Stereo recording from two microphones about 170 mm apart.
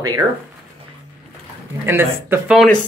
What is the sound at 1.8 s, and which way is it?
Speech, 10° right (ahead or behind).